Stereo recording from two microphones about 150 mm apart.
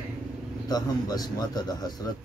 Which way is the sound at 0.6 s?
25° left (ahead or behind).